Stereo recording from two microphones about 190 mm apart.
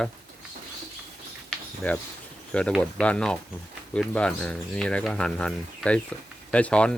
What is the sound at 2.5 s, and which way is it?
Speech, 5° left (ahead or behind).